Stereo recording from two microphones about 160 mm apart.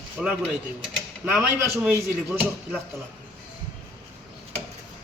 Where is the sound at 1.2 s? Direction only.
10° right (ahead or behind).